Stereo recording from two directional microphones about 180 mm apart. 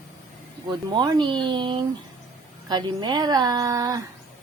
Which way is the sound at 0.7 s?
25° right (ahead or behind).